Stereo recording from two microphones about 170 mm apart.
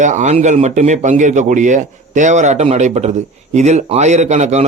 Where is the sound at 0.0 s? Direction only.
45° right (ahead or behind).